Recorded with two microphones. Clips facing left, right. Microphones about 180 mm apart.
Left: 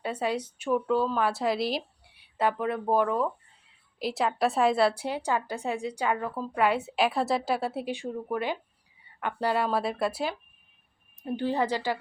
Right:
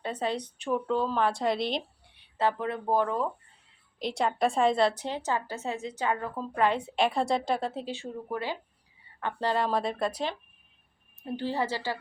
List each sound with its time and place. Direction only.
0.0 s a woman's voice: 10° left (ahead or behind)